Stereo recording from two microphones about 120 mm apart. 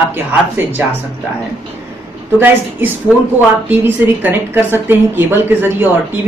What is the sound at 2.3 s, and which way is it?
A woman's voice, 15° right (ahead or behind).